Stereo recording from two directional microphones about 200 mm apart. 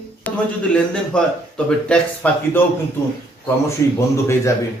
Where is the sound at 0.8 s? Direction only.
5° left (ahead or behind).